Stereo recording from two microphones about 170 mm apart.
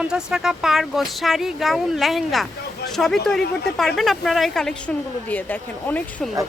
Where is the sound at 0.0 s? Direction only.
5° right (ahead or behind).